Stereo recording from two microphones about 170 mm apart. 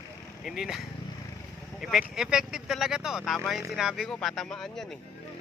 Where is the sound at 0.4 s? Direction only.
5° right (ahead or behind).